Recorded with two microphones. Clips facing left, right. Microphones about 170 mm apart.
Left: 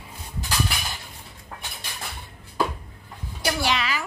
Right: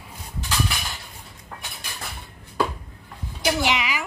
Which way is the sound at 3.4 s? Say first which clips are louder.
Right 2 dB; 20° right (ahead or behind).